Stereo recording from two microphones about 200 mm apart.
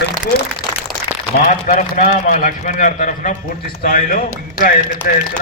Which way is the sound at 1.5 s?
40° left (ahead or behind).